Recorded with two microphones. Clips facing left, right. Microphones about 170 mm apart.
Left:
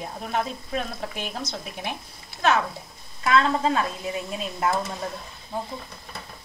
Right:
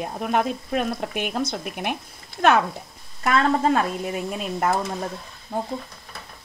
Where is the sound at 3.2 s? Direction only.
50° right (ahead or behind).